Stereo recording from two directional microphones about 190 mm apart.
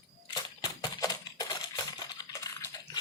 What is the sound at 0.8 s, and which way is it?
Coin, 20° left (ahead or behind).